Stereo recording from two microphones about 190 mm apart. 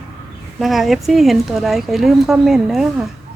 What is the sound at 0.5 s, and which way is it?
Speech, centre (ahead or behind).